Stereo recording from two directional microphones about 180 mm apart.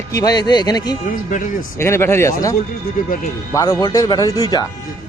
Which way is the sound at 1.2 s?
45° left (ahead or behind).